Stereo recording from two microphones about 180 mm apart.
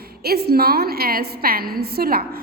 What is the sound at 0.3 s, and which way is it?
A woman's voice, 60° right (ahead or behind).